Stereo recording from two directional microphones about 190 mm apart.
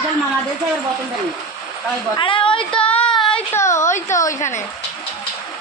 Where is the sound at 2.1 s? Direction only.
25° left (ahead or behind).